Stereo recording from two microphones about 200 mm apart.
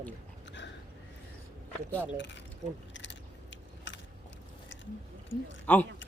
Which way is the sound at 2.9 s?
65° left (ahead or behind).